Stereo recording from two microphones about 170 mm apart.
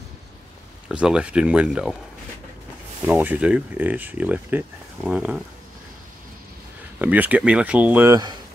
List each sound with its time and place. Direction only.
0.8 s speech: 5° right (ahead or behind)
3.1 s speech: 10° right (ahead or behind)
7.0 s speech: 10° right (ahead or behind)